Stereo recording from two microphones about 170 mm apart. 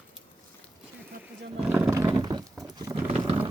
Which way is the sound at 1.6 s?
15° right (ahead or behind).